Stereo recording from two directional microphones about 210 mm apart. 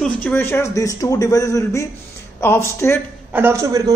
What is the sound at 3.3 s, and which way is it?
Speech, 10° right (ahead or behind).